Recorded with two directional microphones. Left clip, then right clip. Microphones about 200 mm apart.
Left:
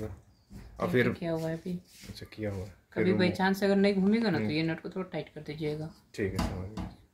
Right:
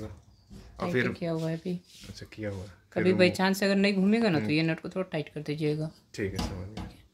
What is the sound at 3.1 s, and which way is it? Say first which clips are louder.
Speech: right 5 dB; 55° right (ahead or behind).